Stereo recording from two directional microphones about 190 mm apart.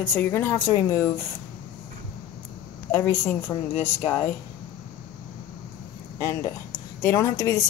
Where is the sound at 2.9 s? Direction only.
15° left (ahead or behind).